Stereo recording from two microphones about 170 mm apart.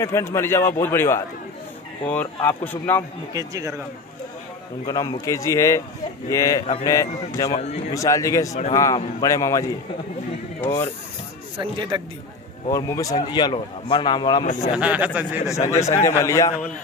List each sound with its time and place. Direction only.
0.0 s a man's voice: 15° left (ahead or behind)
3.3 s speech: 20° right (ahead or behind)
4.8 s a man's voice: 20° left (ahead or behind)
11.6 s speech: 30° right (ahead or behind)
12.7 s a man's voice: 20° left (ahead or behind)
14.4 s speech: 45° left (ahead or behind)
14.8 s speech: 10° right (ahead or behind)
15.4 s a man's voice: 15° left (ahead or behind)